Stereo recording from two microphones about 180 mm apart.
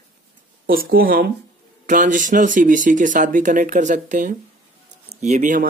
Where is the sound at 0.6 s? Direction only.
55° right (ahead or behind).